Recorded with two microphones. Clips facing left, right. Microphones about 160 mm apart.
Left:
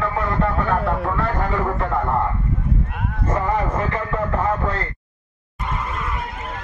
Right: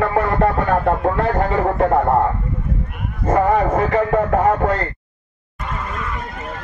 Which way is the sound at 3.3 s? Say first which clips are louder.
Right 7 dB; 65° right (ahead or behind).